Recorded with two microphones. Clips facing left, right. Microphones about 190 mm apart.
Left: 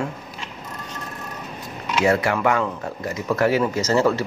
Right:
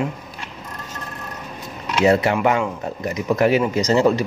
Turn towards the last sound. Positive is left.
turn(degrees=-15)  # may be behind; listen again after turning